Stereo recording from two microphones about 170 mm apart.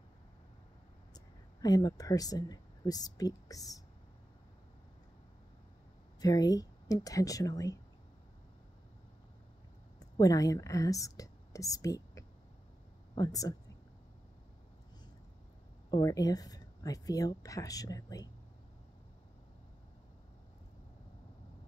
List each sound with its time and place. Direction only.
1.1 s speech: 20° left (ahead or behind)
6.2 s speech: 20° left (ahead or behind)
9.9 s speech: 20° left (ahead or behind)
15.9 s speech: 20° left (ahead or behind)